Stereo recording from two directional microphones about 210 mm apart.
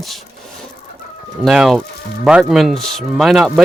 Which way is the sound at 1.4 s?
Centre (ahead or behind).